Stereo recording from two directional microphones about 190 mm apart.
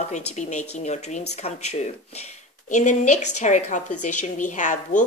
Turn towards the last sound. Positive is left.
turn(degrees=40)  # may be behind; listen again after turning